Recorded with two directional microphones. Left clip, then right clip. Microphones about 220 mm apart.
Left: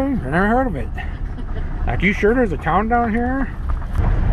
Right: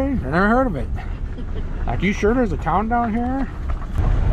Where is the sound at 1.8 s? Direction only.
10° right (ahead or behind).